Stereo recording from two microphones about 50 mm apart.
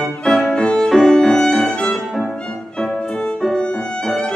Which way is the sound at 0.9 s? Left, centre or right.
Centre.